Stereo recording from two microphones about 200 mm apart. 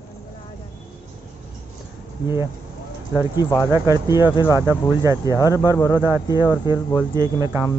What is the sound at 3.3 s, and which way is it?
Speech, 20° left (ahead or behind).